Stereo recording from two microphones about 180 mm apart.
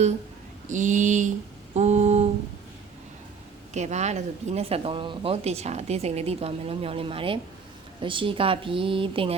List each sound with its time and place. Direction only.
0.7 s speech: 45° right (ahead or behind)
1.7 s mantra: 40° right (ahead or behind)
3.8 s a woman's voice: 40° right (ahead or behind)